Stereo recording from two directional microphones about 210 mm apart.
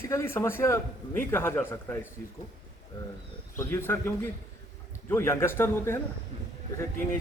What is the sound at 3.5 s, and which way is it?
A man's voice, 10° left (ahead or behind).